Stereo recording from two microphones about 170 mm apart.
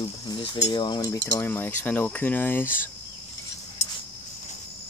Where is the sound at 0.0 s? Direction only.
25° left (ahead or behind).